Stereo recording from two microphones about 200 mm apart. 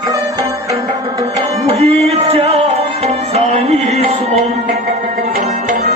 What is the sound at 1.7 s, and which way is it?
Music, 30° right (ahead or behind).